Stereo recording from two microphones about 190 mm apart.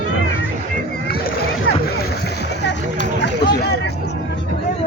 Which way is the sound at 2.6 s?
65° left (ahead or behind).